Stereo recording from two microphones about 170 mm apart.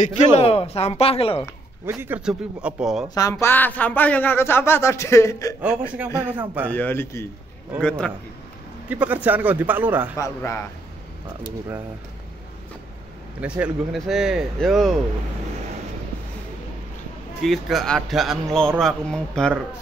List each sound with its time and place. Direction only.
0.0 s speech: 40° left (ahead or behind)
1.9 s a man's voice: 10° right (ahead or behind)
3.2 s speech: 20° left (ahead or behind)
5.6 s a man's voice: 10° right (ahead or behind)
6.7 s speech: 10° left (ahead or behind)
8.8 s a man's voice: 10° right (ahead or behind)
10.1 s speech: 15° left (ahead or behind)
13.4 s a man's voice: 10° right (ahead or behind)
17.4 s speech: centre (ahead or behind)